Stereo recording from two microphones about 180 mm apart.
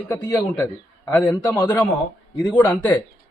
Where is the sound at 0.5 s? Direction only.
Centre (ahead or behind).